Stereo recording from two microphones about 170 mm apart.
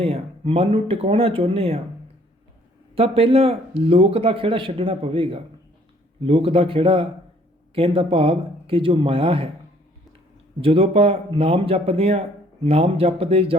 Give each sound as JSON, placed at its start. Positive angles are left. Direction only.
{"t": 0.0, "sound": "speech", "side_deg": -35}
{"t": 2.9, "sound": "speech", "side_deg": -35}
{"t": 10.6, "sound": "speech", "side_deg": -30}